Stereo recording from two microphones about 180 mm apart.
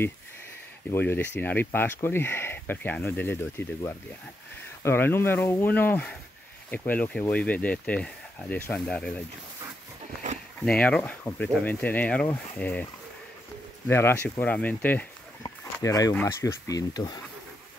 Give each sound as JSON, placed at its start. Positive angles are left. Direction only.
{"t": 0.9, "sound": "speech", "side_deg": 10}
{"t": 10.6, "sound": "speech", "side_deg": 5}
{"t": 13.8, "sound": "speech", "side_deg": 15}